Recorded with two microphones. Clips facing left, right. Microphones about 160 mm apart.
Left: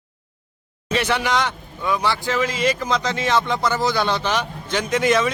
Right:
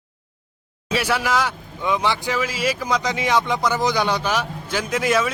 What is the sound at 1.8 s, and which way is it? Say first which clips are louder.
Speech: even; 20° right (ahead or behind).